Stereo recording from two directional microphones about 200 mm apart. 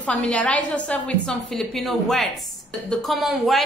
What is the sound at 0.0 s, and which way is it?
A woman's voice, 5° left (ahead or behind).